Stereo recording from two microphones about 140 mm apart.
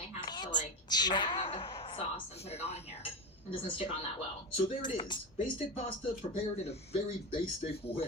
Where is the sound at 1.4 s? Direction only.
45° left (ahead or behind).